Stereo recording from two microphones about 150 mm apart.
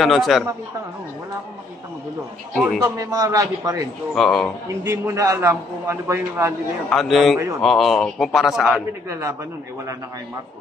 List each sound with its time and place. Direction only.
0.0 s a man's voice: centre (ahead or behind)
2.8 s a man's voice: 25° right (ahead or behind)
4.1 s a man's voice: centre (ahead or behind)
4.8 s a man's voice: 15° right (ahead or behind)
6.9 s a man's voice: centre (ahead or behind)